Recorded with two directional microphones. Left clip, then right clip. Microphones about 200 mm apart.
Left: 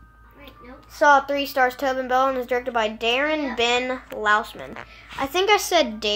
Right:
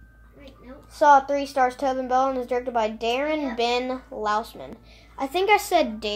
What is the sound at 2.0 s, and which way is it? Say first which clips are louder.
Speech: left 2 dB; 10° left (ahead or behind).